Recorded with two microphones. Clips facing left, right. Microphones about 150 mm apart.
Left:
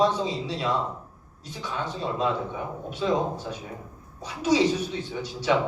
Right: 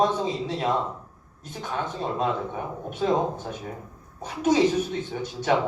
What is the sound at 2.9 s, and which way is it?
Speech, 50° right (ahead or behind).